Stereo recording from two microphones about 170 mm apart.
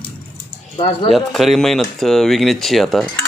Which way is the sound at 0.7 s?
35° left (ahead or behind).